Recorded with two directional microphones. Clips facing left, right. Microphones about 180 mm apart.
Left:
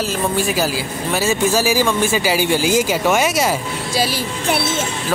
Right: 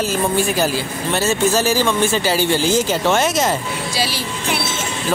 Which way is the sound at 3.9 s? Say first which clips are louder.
Left 5 dB; 50° left (ahead or behind).